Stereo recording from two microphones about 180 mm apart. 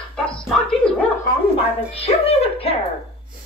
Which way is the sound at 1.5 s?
35° left (ahead or behind).